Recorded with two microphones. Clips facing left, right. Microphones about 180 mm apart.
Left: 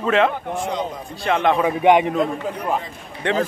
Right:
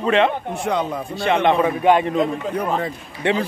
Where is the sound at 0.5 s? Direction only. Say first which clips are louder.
Right 3 dB; 65° right (ahead or behind).